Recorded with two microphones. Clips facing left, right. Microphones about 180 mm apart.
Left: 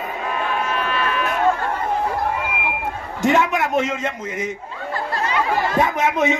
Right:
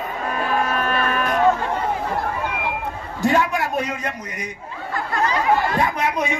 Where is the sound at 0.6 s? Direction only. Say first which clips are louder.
Right 1 dB; 45° right (ahead or behind).